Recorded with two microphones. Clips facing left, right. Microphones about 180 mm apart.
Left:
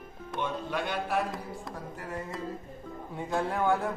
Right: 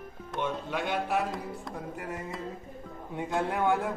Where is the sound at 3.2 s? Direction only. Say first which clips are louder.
Right 1 dB; 15° right (ahead or behind).